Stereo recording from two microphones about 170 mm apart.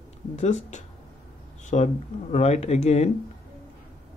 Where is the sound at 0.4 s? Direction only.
45° left (ahead or behind).